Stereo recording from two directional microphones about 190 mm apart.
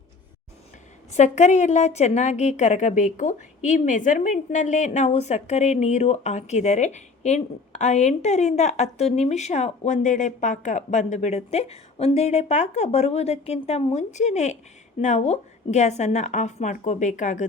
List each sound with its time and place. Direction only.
1.1 s a woman's voice: 35° left (ahead or behind)